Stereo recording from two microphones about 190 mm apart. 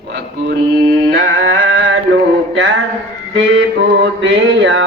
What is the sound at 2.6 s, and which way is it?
Music, 80° right.